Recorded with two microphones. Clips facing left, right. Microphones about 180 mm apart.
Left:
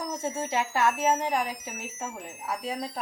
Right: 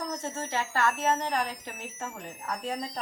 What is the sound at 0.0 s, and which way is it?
Speech, 10° left (ahead or behind).